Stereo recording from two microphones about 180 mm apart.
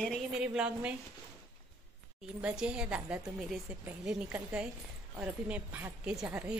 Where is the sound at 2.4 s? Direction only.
5° right (ahead or behind).